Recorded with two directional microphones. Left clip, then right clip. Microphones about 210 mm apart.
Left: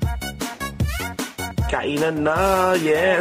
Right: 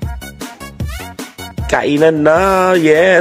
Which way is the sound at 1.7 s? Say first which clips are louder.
Right 11 dB; 40° right (ahead or behind).